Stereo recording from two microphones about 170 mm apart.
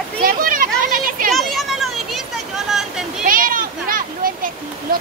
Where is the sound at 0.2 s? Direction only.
55° right (ahead or behind).